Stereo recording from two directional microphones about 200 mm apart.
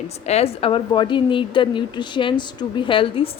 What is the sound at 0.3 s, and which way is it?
A woman's voice, 30° left (ahead or behind).